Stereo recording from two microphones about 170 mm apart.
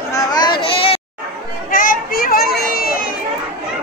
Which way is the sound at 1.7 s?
55° left (ahead or behind).